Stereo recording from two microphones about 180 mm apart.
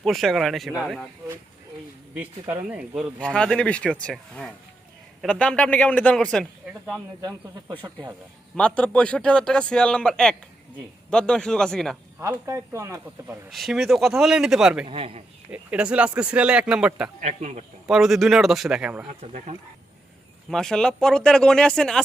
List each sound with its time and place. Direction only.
0.0 s a man's voice: centre (ahead or behind)
2.1 s speech: 10° right (ahead or behind)
3.2 s a man's voice: 5° left (ahead or behind)
7.2 s speech: 25° right (ahead or behind)
8.5 s a man's voice: 5° left (ahead or behind)
12.2 s speech: 15° right (ahead or behind)
13.5 s a man's voice: centre (ahead or behind)
14.8 s speech: 35° right (ahead or behind)
15.4 s speech: 10° right (ahead or behind)
17.2 s speech: 40° right (ahead or behind)
17.8 s a man's voice: centre (ahead or behind)
19.2 s speech: 40° right (ahead or behind)
20.5 s a man's voice: 5° left (ahead or behind)